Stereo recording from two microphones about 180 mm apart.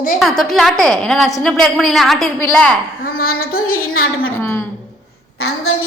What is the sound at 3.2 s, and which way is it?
Female singing, 55° left (ahead or behind).